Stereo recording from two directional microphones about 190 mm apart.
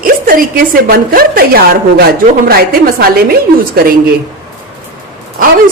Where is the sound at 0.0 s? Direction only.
50° right (ahead or behind).